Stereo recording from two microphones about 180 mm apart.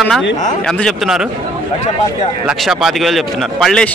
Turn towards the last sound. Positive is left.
turn(degrees=0)  # may be behind; listen again after turning